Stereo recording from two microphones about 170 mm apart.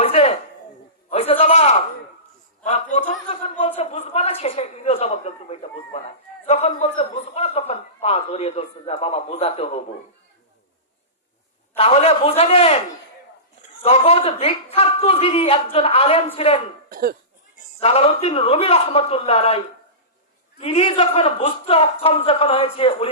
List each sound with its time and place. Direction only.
0.0 s a sound: 35° left (ahead or behind)
6.4 s a man's voice: 40° left (ahead or behind)
11.8 s a man's voice: 35° left (ahead or behind)
13.8 s a man's voice: 35° left (ahead or behind)
16.9 s cough: 60° right (ahead or behind)
17.7 s a man's voice: 35° left (ahead or behind)